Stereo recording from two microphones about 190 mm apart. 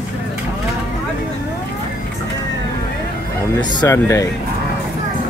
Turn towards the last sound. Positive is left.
turn(degrees=15)  # may be behind; listen again after turning